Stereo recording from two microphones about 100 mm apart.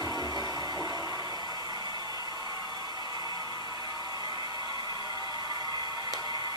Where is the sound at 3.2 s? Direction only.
45° left (ahead or behind).